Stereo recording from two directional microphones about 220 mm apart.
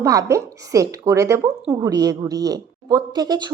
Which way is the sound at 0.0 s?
15° right (ahead or behind).